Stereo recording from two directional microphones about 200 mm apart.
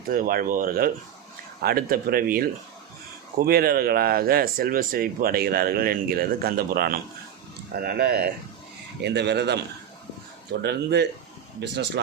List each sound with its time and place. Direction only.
0.1 s speech: 45° right (ahead or behind)
10.6 s speech: 55° right (ahead or behind)